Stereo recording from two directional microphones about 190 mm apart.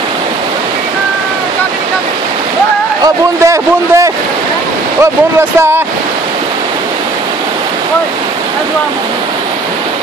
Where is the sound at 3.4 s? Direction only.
15° right (ahead or behind).